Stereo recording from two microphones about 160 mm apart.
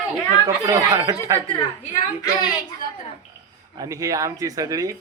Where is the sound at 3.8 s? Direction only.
20° right (ahead or behind).